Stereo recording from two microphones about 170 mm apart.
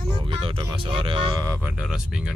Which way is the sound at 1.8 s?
5° right (ahead or behind).